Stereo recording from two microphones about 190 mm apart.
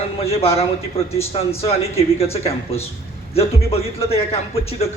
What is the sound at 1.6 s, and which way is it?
A man's voice, 30° left (ahead or behind).